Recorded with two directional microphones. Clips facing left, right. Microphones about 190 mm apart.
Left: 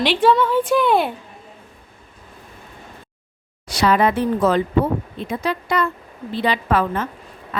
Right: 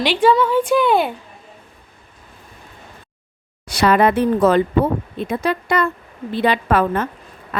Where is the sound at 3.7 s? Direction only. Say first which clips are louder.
Right 2 dB; 55° right (ahead or behind).